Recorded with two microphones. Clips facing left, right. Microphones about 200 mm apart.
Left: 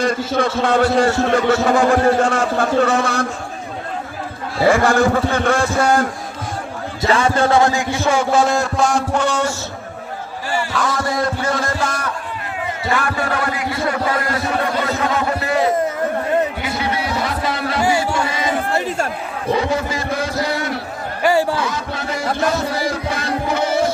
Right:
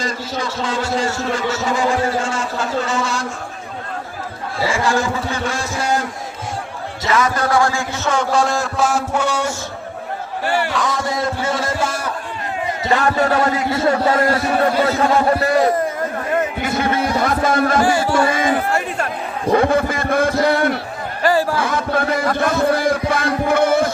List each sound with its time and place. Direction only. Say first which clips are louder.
0.0 s a man's voice: left 6 dB; 55° left (ahead or behind)
4.6 s a man's voice: left 5 dB; 60° left (ahead or behind)
7.1 s a man's voice: left 2 dB; 30° left (ahead or behind); by 9.6 s 10° right (ahead or behind)
10.4 s speech: right 3 dB; 60° right (ahead or behind)
10.7 s a man's voice: even; centre (ahead or behind)
13.2 s a man's voice: right 4 dB; 25° right (ahead or behind)
14.2 s a sound: right 4 dB; 40° right (ahead or behind)
16.6 s music: right 3 dB; 50° right (ahead or behind)
18.3 s crowd: right 4 dB; 50° right (ahead or behind)
19.5 s speech: right 6 dB; 55° right (ahead or behind)
21.2 s a sound: left 1 dB; 15° left (ahead or behind)
21.6 s music: right 4 dB; 55° right (ahead or behind)